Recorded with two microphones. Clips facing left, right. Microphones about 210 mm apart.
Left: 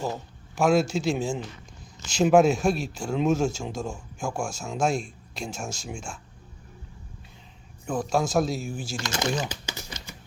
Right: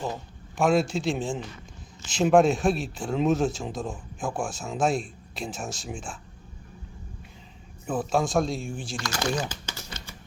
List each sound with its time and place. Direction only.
0.0 s speech: centre (ahead or behind)
7.9 s speech: 5° right (ahead or behind)
9.0 s speech: 25° left (ahead or behind)
9.5 s a sound: 15° left (ahead or behind)